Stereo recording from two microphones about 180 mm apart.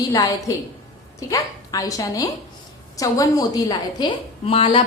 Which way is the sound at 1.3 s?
20° left (ahead or behind).